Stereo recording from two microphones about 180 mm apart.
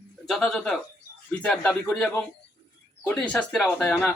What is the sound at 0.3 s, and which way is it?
A man's voice, 5° left (ahead or behind).